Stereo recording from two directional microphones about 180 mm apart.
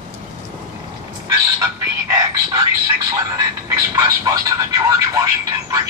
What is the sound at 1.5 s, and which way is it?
Speech, 15° right (ahead or behind).